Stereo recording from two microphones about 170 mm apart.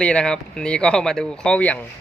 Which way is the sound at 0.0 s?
5° left (ahead or behind).